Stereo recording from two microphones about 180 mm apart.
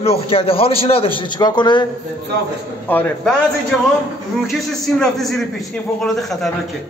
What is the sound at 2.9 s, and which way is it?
Speech, 10° left (ahead or behind).